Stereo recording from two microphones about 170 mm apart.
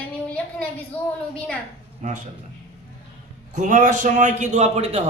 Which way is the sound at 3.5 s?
45° right (ahead or behind).